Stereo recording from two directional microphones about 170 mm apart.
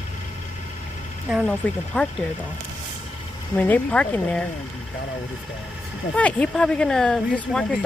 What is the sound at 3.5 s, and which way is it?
Speech, 10° left (ahead or behind).